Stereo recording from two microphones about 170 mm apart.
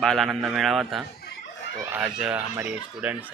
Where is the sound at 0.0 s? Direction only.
Centre (ahead or behind).